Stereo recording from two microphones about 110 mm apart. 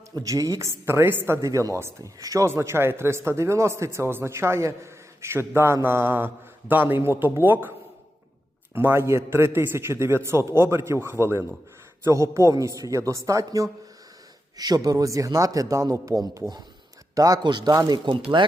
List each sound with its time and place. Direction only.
0.2 s a woman's voice: 30° right (ahead or behind)
8.7 s a woman's voice: 20° right (ahead or behind); by 18.2 s 40° right (ahead or behind)